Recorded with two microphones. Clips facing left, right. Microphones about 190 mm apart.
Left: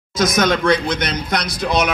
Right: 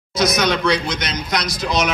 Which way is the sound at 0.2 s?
50° left (ahead or behind).